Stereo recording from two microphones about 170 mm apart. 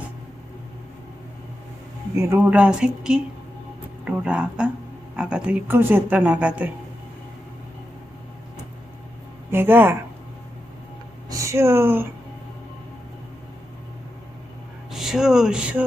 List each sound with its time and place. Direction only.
2.1 s a woman's voice: 15° right (ahead or behind)
9.5 s a woman's voice: 15° right (ahead or behind)
11.3 s speech: 20° right (ahead or behind)
14.8 s speech: centre (ahead or behind)